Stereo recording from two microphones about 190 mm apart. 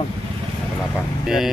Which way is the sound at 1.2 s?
Centre (ahead or behind).